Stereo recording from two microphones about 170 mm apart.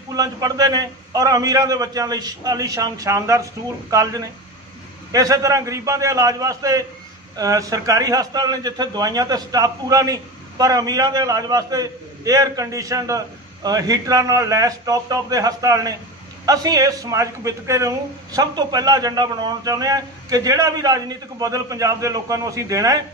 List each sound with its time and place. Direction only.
0.1 s a man's voice: 20° right (ahead or behind)